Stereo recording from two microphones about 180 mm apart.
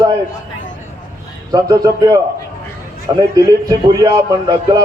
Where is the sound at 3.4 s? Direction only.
20° right (ahead or behind).